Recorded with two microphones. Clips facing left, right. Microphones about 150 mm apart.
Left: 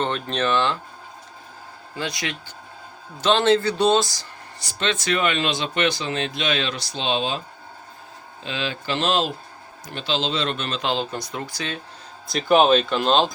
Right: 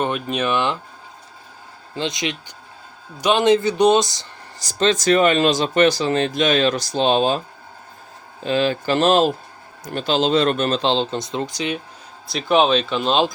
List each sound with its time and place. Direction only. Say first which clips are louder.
0.0 s speech: right 2 dB; 10° right (ahead or behind)
2.0 s speech: right 4 dB; 20° right (ahead or behind)
4.6 s speech: right 8 dB; 40° right (ahead or behind)
8.4 s a man's voice: right 9 dB; 45° right (ahead or behind)
10.8 s speech: right 5 dB; 25° right (ahead or behind)
12.3 s speech: even; centre (ahead or behind)